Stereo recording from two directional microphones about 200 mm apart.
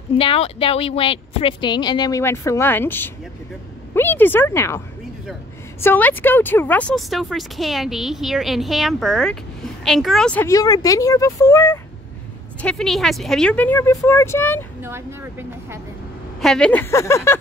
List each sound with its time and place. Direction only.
0.2 s speech: 25° left (ahead or behind)
12.6 s speech: centre (ahead or behind)
14.8 s speech: 10° right (ahead or behind)
16.3 s speech: centre (ahead or behind)